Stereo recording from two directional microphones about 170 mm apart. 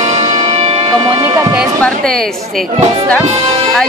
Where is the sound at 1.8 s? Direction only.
5° left (ahead or behind).